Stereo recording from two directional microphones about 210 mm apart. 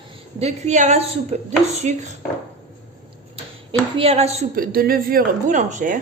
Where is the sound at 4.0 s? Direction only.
30° right (ahead or behind).